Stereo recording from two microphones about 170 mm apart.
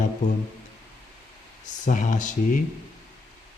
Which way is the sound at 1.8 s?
50° left (ahead or behind).